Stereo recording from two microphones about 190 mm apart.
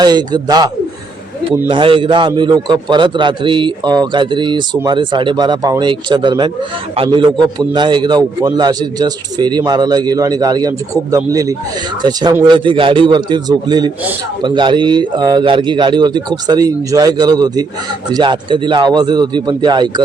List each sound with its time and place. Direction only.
0.0 s a man's voice: 20° right (ahead or behind)